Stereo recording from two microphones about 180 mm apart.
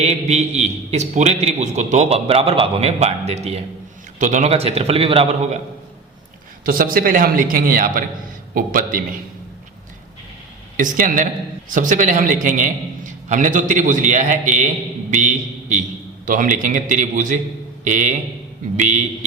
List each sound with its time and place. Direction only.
0.0 s a man's voice: 40° right (ahead or behind)
6.7 s a man's voice: 55° right (ahead or behind)
10.8 s a man's voice: 45° right (ahead or behind)